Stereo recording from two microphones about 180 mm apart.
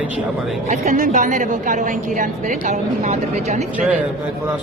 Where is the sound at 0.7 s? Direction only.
45° right (ahead or behind).